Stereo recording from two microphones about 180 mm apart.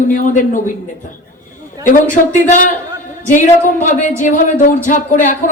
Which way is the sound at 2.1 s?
45° left (ahead or behind).